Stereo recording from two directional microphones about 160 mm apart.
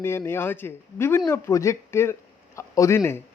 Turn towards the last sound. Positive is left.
turn(degrees=15)  # may be behind; listen again after turning